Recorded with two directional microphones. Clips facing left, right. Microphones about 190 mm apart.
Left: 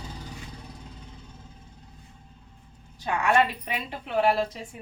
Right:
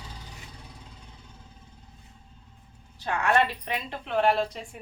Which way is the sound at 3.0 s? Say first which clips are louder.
Left 1 dB; 10° left (ahead or behind).